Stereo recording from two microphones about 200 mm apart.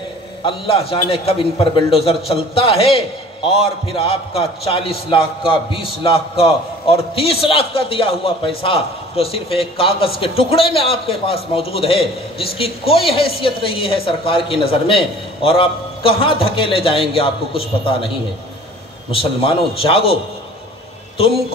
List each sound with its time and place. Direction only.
0.4 s speech: 25° left (ahead or behind)
19.4 s speech: 30° left (ahead or behind)